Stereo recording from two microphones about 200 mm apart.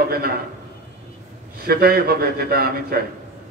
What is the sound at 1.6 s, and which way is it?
Speech, 50° right (ahead or behind).